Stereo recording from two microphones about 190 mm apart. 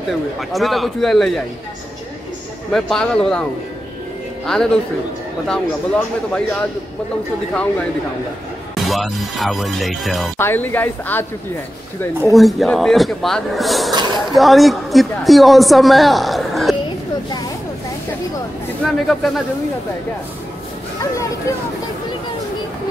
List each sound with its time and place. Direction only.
0.4 s a woman's voice: centre (ahead or behind)
2.7 s a woman's voice: 5° left (ahead or behind)
4.5 s a woman's voice: 5° left (ahead or behind)
8.7 s a woman's voice: centre (ahead or behind)
10.3 s speech: 10° left (ahead or behind)
12.3 s a woman's voice: centre (ahead or behind)
13.9 s a sound: 25° right (ahead or behind)
14.3 s a woman's voice: centre (ahead or behind)
18.9 s a woman's voice: centre (ahead or behind)
21.5 s speech: 15° left (ahead or behind)